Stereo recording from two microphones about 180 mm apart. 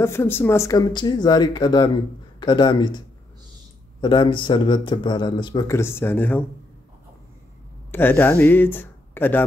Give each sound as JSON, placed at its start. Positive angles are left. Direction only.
{"t": 0.0, "sound": "speech", "side_deg": 15}
{"t": 4.0, "sound": "speech", "side_deg": 25}
{"t": 7.9, "sound": "speech", "side_deg": 10}